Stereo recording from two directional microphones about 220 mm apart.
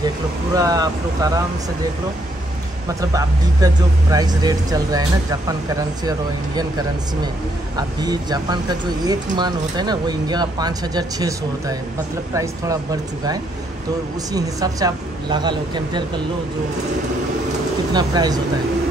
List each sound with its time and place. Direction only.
0.6 s speech: 15° right (ahead or behind)
3.0 s speech: 15° right (ahead or behind)
7.7 s speech: 20° right (ahead or behind)
17.9 s speech: 20° right (ahead or behind)